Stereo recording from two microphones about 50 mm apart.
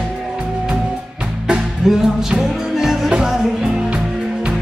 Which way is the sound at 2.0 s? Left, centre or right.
Centre.